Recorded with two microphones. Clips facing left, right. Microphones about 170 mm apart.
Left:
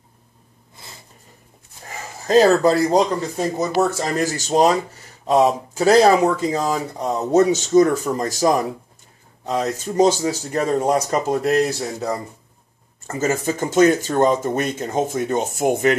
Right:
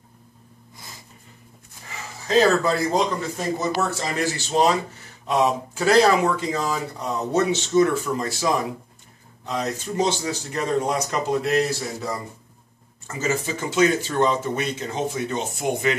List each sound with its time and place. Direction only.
0.7 s snort: 30° left (ahead or behind)
1.9 s speech: 45° left (ahead or behind)